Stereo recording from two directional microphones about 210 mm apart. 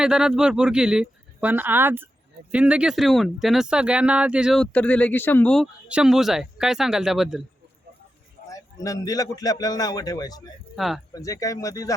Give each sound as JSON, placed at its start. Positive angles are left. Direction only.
{"t": 0.0, "sound": "speech", "side_deg": -5}
{"t": 8.4, "sound": "a man's voice", "side_deg": 15}
{"t": 10.8, "sound": "speech", "side_deg": 0}
{"t": 11.1, "sound": "a man's voice", "side_deg": 15}